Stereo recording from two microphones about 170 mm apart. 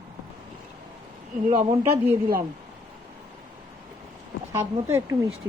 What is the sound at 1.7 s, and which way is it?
Speech, 15° right (ahead or behind).